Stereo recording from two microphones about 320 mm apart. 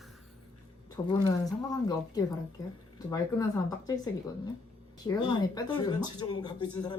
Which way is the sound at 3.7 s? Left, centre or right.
Centre.